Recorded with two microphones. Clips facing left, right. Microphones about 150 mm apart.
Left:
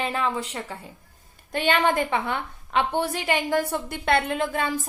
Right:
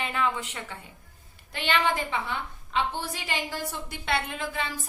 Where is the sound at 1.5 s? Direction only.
50° left (ahead or behind).